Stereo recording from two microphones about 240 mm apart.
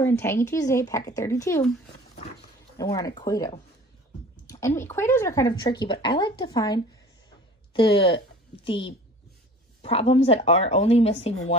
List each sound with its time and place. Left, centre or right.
0.0 s speech: centre
1.6 s speech: left
2.8 s speech: centre